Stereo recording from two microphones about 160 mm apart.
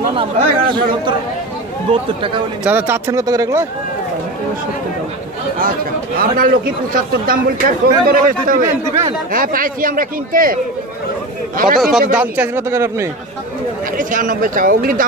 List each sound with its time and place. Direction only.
0.1 s speech: 30° right (ahead or behind)
2.6 s speech: 15° right (ahead or behind)
5.6 s speech: 60° right (ahead or behind)
12.1 s a man's voice: 10° right (ahead or behind)
13.9 s speech: 55° right (ahead or behind)